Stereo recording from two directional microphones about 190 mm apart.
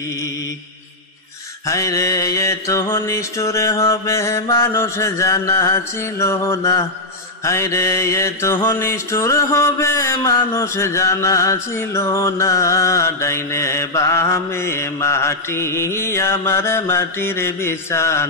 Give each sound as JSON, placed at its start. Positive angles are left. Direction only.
{"t": 1.7, "sound": "mantra", "side_deg": 15}